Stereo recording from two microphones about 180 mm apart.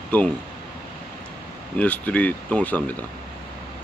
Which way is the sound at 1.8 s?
10° left (ahead or behind).